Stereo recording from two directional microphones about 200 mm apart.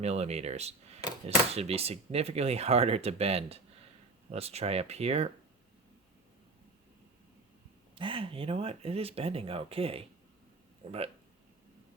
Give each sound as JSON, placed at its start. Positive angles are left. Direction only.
{"t": 0.0, "sound": "speech", "side_deg": -30}
{"t": 7.9, "sound": "speech", "side_deg": -25}